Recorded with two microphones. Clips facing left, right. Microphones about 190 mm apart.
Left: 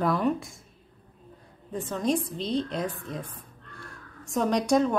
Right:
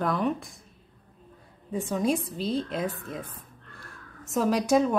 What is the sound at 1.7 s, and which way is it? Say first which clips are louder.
A woman's voice: right 1 dB; 10° right (ahead or behind).